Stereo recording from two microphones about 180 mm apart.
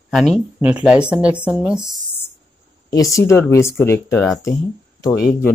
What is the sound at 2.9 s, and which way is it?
Speech, 20° left (ahead or behind).